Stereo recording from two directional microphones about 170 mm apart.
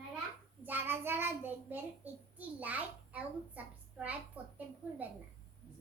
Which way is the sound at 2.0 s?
10° right (ahead or behind).